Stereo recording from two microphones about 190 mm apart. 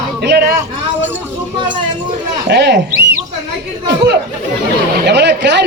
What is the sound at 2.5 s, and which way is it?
Speech, 65° right (ahead or behind).